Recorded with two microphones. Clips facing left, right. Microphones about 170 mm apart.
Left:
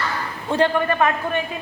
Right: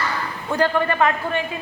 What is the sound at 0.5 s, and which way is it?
Speech, 30° left (ahead or behind).